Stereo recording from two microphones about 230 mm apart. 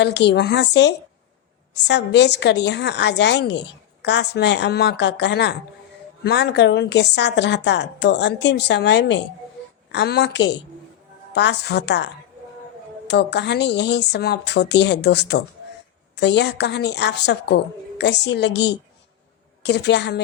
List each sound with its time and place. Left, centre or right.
0.0 s a woman's voice: left